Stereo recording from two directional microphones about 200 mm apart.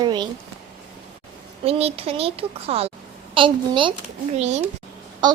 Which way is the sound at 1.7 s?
30° right (ahead or behind).